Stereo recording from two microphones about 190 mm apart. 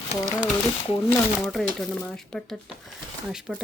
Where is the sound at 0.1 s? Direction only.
25° left (ahead or behind).